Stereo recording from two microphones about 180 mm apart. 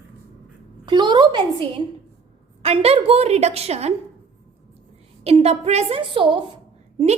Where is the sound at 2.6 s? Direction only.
35° right (ahead or behind).